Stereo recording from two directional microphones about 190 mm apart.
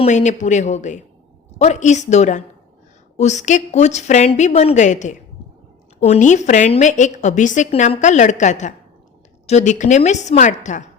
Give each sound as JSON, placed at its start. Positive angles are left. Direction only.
{"t": 0.0, "sound": "a woman's voice", "side_deg": 40}